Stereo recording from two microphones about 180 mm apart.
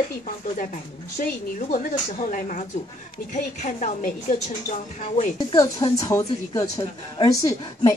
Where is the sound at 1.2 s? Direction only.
45° left (ahead or behind).